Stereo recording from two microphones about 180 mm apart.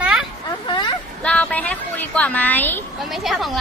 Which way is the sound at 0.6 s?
25° left (ahead or behind).